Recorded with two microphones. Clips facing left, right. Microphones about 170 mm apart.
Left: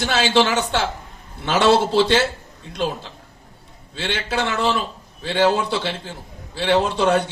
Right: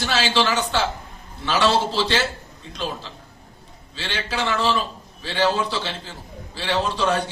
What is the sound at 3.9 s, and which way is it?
A man's voice, 55° left (ahead or behind).